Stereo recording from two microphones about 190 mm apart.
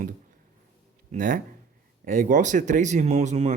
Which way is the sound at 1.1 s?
45° right (ahead or behind).